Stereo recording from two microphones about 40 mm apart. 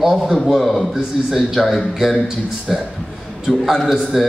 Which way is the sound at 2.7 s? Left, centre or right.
Centre.